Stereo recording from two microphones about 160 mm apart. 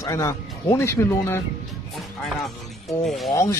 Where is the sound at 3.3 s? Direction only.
20° left (ahead or behind).